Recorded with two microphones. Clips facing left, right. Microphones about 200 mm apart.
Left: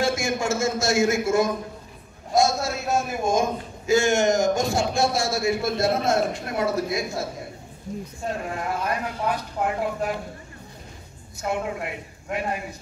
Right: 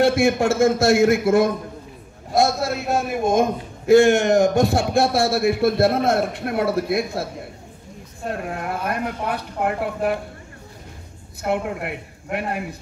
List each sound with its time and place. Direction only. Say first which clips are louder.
0.0 s a man's voice: right 7 dB; 60° right (ahead or behind)
8.3 s a man's voice: right 2 dB; 60° right (ahead or behind)
11.4 s a man's voice: right 3 dB; 60° right (ahead or behind)